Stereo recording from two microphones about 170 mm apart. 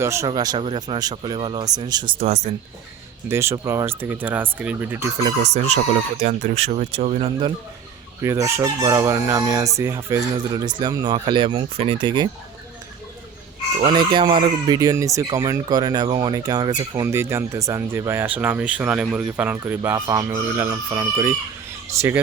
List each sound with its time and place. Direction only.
0.0 s speech: 15° right (ahead or behind)
0.3 s chicken: 25° right (ahead or behind)
2.1 s speech: 40° right (ahead or behind)
3.2 s speech: 15° right (ahead or behind)
5.2 s speech: 40° right (ahead or behind)
8.2 s chicken: 15° right (ahead or behind)
13.8 s speech: 25° right (ahead or behind)